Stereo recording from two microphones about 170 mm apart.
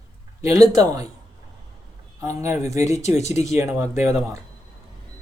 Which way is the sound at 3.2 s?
40° left (ahead or behind).